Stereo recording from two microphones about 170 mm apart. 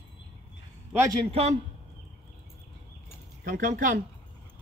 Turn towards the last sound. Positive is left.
turn(degrees=-55)  # may be behind; listen again after turning